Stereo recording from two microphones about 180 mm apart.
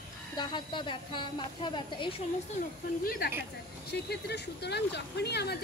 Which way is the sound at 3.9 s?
65° left (ahead or behind).